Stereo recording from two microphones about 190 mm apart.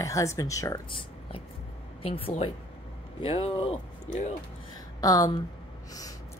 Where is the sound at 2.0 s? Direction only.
30° left (ahead or behind).